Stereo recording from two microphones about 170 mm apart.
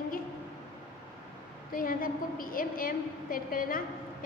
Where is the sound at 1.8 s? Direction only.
55° left (ahead or behind).